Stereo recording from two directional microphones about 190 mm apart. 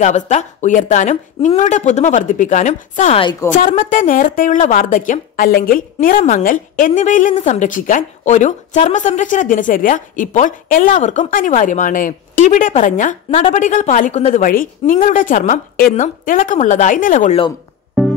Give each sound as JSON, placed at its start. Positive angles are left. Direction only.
{"t": 0.0, "sound": "a woman's voice", "side_deg": 40}
{"t": 18.0, "sound": "music", "side_deg": 0}